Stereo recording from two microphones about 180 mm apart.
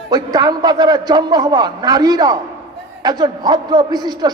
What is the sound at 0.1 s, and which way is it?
A man's voice, 20° right (ahead or behind).